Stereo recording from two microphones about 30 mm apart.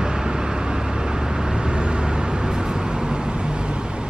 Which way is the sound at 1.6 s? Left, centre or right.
Right.